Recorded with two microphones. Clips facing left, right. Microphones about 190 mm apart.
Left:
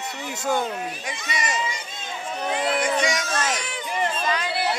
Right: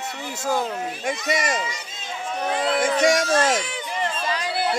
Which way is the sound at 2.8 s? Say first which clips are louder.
Right 4 dB; 50° right (ahead or behind).